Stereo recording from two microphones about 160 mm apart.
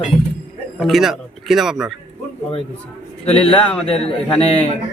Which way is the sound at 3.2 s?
40° left (ahead or behind).